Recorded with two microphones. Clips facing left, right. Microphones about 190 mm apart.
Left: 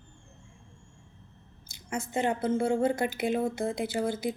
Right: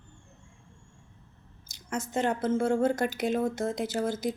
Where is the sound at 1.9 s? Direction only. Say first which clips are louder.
Even; 10° left (ahead or behind).